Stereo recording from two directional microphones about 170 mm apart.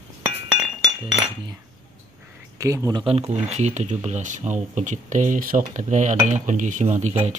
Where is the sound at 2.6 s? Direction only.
15° right (ahead or behind).